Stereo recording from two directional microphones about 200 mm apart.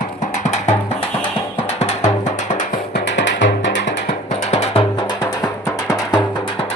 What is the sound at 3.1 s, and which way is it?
Music, 60° left (ahead or behind).